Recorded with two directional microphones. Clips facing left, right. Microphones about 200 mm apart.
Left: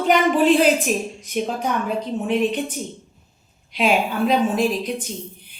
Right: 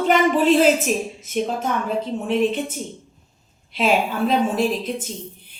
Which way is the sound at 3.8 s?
Centre (ahead or behind).